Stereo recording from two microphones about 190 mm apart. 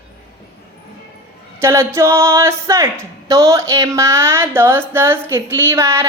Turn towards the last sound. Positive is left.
turn(degrees=-15)  # may be behind; listen again after turning